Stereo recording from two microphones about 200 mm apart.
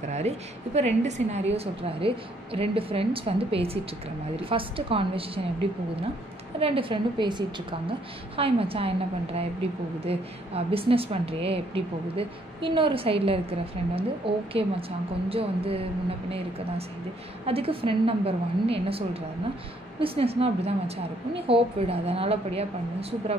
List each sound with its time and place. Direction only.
0.7 s a woman's voice: 35° right (ahead or behind)
6.6 s a woman's voice: 25° right (ahead or behind)